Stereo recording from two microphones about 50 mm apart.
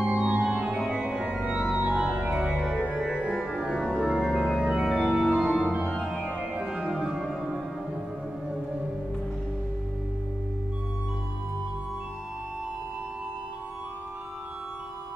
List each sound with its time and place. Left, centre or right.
0.0 s music: right
0.7 s music: centre
1.4 s organ: centre
1.8 s music: right
2.3 s organ: centre